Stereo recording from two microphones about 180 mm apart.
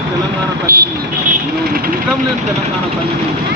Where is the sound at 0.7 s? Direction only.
50° right (ahead or behind).